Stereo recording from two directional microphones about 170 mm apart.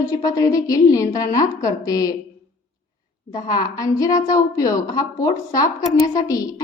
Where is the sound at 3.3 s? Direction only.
20° left (ahead or behind).